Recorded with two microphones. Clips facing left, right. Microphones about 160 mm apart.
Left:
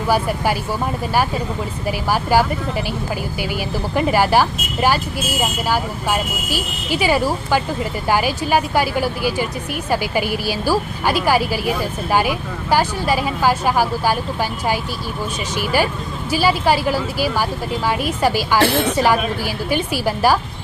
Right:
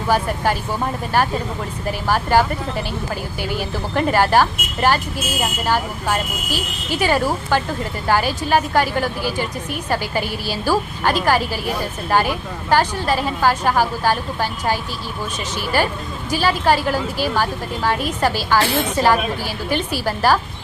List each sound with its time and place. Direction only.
0.1 s speech: 10° left (ahead or behind)
1.9 s speech: 10° left (ahead or behind)
15.5 s speech: 10° left (ahead or behind)